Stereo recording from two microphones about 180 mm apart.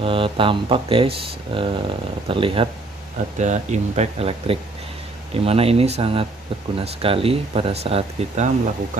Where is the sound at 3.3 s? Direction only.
40° right (ahead or behind).